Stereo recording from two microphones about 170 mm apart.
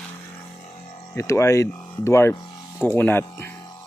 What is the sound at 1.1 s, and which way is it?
Speech, 15° left (ahead or behind).